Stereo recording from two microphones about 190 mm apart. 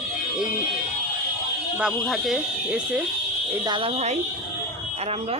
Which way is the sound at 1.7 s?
Centre (ahead or behind).